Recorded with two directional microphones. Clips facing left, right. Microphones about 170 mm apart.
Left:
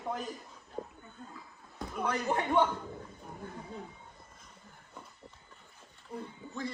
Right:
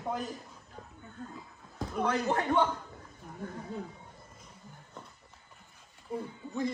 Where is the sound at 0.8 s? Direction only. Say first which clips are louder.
Left 10 dB; 35° left (ahead or behind).